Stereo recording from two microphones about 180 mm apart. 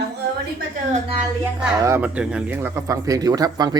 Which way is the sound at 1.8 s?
10° right (ahead or behind).